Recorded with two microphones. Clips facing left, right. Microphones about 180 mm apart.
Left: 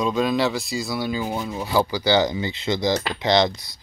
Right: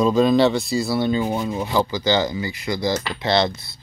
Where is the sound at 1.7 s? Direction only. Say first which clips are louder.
Left 2 dB; 10° left (ahead or behind).